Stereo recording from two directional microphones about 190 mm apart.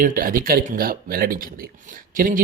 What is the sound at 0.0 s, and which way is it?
Speech, 45° right (ahead or behind).